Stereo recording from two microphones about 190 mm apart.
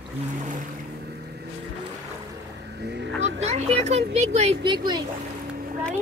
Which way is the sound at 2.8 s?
65° right (ahead or behind).